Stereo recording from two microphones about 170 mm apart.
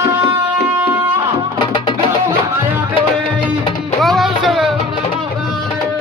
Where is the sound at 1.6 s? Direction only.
30° left (ahead or behind).